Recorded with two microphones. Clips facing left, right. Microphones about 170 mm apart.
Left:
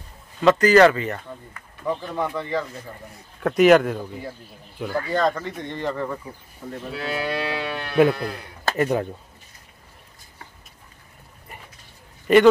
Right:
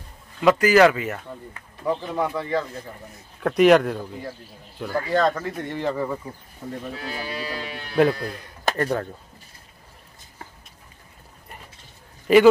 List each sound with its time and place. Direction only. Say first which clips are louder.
0.4 s speech: left 1 dB; 10° right (ahead or behind)
1.5 s speech: right 2 dB; 20° right (ahead or behind)
2.1 s speech: right 1 dB; 5° right (ahead or behind)
6.9 s speech: left 5 dB; 70° left (ahead or behind)
8.7 s speech: left 5 dB; 10° left (ahead or behind)
11.5 s a sound: even; centre (ahead or behind)
12.3 s speech: even; centre (ahead or behind)